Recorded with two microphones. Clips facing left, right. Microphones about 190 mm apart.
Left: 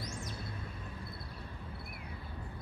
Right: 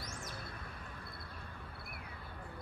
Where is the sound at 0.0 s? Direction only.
25° left (ahead or behind).